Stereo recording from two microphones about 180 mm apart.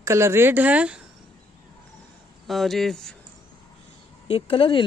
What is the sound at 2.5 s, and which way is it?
Speech, centre (ahead or behind).